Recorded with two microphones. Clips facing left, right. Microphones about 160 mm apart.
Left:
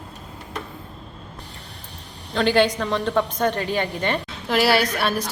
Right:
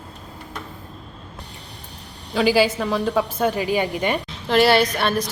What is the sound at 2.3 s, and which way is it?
A woman's voice, 5° right (ahead or behind).